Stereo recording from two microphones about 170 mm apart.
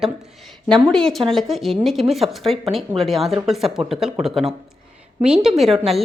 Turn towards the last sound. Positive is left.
turn(degrees=0)  # may be behind; listen again after turning